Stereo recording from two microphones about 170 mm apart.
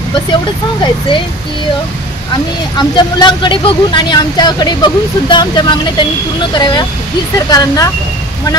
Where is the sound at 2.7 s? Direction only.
25° left (ahead or behind).